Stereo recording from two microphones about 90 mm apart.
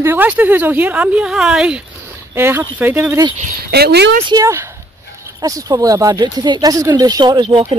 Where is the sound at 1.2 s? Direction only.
5° right (ahead or behind).